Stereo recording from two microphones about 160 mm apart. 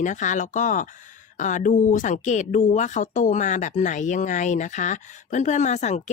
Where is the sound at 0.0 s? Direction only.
50° left (ahead or behind).